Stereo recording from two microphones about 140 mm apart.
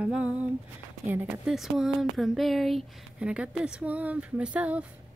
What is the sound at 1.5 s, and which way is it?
Speech, centre (ahead or behind).